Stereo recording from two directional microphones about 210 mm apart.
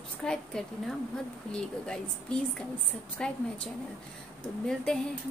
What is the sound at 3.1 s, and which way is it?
Speech, 5° left (ahead or behind).